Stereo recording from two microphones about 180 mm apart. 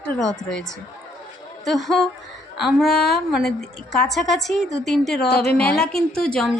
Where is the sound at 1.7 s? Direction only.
Centre (ahead or behind).